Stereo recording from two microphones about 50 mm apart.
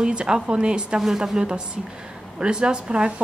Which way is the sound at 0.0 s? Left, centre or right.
Centre.